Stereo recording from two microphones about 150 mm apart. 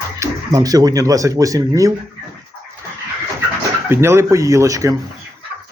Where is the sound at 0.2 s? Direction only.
25° right (ahead or behind).